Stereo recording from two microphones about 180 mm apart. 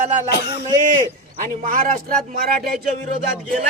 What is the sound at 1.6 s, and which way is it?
Speech, 50° right (ahead or behind).